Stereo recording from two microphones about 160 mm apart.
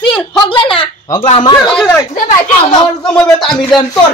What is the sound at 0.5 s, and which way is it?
A child's voice, 30° left (ahead or behind).